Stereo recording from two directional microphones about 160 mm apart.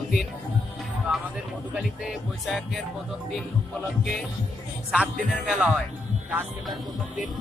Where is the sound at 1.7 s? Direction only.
5° right (ahead or behind).